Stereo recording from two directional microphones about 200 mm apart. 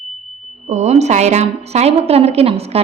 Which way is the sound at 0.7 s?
35° right (ahead or behind).